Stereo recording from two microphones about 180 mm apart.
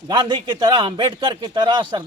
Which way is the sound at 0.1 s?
25° right (ahead or behind).